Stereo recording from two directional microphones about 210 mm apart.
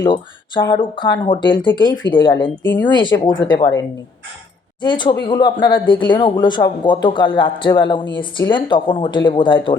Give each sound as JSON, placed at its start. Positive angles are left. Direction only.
{"t": 0.0, "sound": "speech", "side_deg": 20}